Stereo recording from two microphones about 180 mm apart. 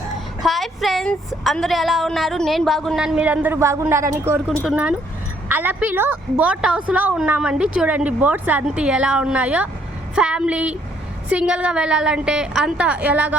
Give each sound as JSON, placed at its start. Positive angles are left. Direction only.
{"t": 0.4, "sound": "speech", "side_deg": 0}
{"t": 4.6, "sound": "a woman's voice", "side_deg": -5}